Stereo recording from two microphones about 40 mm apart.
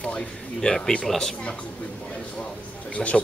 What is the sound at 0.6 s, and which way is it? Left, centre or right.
Speech, centre.